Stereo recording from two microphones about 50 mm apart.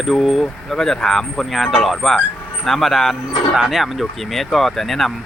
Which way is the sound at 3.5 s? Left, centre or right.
Centre.